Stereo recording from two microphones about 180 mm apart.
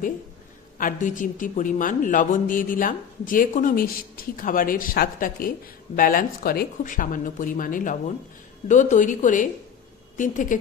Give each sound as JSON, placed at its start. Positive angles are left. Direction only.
{"t": 0.7, "sound": "a woman's voice", "side_deg": 45}